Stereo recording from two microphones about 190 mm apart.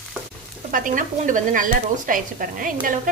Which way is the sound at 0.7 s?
45° right (ahead or behind).